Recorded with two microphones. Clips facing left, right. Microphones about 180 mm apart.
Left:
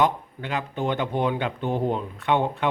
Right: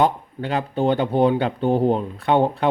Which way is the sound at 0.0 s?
35° right (ahead or behind).